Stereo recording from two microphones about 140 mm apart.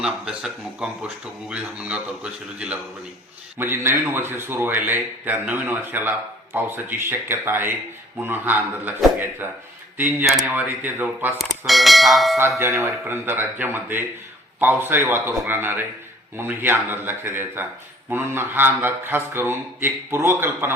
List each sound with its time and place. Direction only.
0.0 s a man's voice: 5° right (ahead or behind)
11.3 s speech: centre (ahead or behind)
12.5 s a man's voice: 15° right (ahead or behind)